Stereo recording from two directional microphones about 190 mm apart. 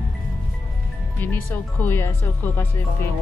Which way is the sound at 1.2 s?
10° left (ahead or behind).